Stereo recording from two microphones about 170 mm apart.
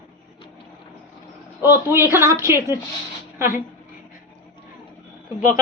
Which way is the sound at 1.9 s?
15° right (ahead or behind).